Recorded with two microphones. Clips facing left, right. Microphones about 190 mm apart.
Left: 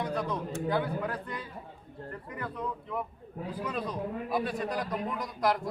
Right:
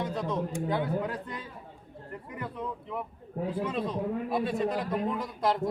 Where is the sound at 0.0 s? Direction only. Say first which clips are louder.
Right 1 dB; 20° right (ahead or behind).